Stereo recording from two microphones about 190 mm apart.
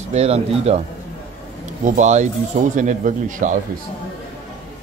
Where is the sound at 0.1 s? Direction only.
35° right (ahead or behind).